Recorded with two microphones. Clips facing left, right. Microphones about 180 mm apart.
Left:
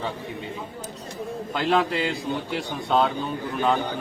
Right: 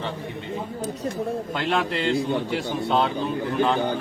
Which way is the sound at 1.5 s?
Centre (ahead or behind).